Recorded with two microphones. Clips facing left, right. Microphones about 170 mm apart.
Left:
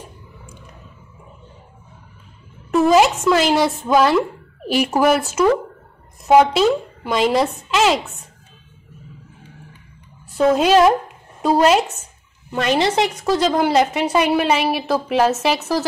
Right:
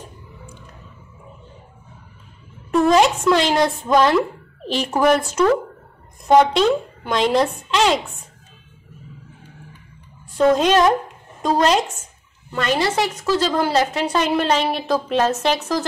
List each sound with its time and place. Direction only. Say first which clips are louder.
2.7 s a woman's voice: left 1 dB; 5° left (ahead or behind)
10.3 s a woman's voice: left 1 dB; 5° left (ahead or behind)
12.4 s a woman's voice: left 2 dB; 20° left (ahead or behind)